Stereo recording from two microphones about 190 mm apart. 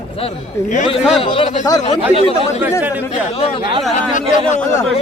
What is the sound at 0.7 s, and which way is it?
Speech, 35° left (ahead or behind).